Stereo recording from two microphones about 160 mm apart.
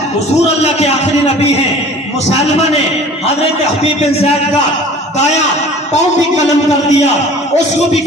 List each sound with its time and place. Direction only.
4.0 s a man's voice: 40° left (ahead or behind)